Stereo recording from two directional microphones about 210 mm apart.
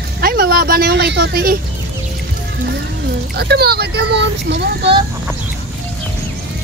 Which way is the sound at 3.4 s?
50° right (ahead or behind).